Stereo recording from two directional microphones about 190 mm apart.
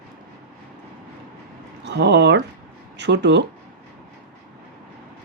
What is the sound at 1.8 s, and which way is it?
Speech, 60° right (ahead or behind).